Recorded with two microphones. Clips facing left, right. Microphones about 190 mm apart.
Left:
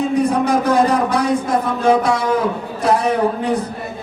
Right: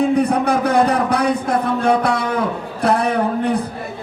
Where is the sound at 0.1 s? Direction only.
60° right (ahead or behind).